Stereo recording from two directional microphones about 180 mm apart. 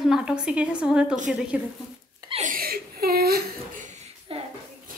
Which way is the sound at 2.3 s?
45° right (ahead or behind).